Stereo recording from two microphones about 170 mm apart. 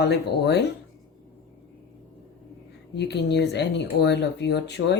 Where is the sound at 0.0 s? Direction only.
90° left.